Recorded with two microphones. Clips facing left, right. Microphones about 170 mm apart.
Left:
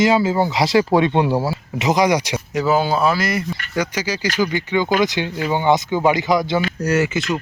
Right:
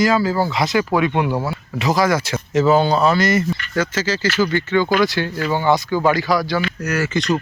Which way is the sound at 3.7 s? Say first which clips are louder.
Even; 15° left (ahead or behind).